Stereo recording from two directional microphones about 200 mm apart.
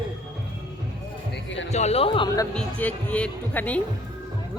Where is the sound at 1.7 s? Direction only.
35° left (ahead or behind).